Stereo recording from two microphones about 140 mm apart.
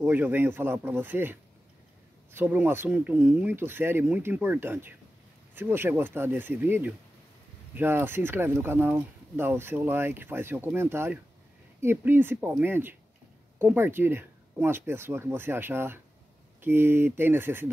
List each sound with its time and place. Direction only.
0.0 s speech: 15° right (ahead or behind)